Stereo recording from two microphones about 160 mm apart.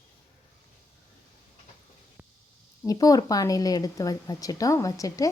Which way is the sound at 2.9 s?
20° left (ahead or behind).